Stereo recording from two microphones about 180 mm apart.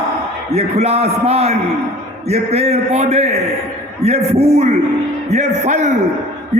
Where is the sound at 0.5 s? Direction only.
35° right (ahead or behind).